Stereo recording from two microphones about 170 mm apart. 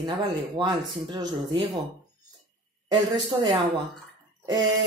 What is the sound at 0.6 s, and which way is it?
Speech, 25° right (ahead or behind).